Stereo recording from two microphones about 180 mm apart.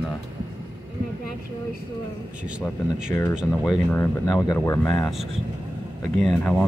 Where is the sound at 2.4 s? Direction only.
5° right (ahead or behind).